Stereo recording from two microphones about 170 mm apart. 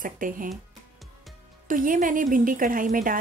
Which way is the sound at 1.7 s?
55° right (ahead or behind).